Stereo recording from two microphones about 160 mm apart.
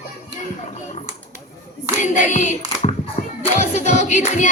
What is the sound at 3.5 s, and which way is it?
Speech, 45° left (ahead or behind).